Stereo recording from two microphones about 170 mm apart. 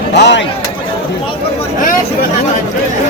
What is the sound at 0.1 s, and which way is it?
Speech, 90° left.